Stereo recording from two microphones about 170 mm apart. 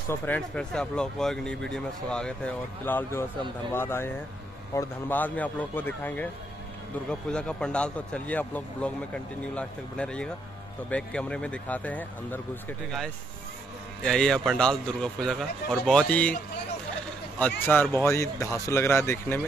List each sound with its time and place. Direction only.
0.1 s speech: 10° left (ahead or behind)
17.4 s speech: 10° left (ahead or behind)